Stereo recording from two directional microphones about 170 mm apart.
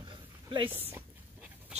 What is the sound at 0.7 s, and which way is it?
Dog, 10° right (ahead or behind).